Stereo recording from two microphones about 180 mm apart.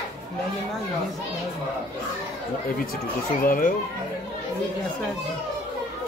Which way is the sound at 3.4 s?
50° left (ahead or behind).